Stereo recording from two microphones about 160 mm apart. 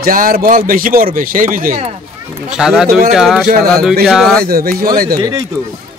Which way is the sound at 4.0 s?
Centre (ahead or behind).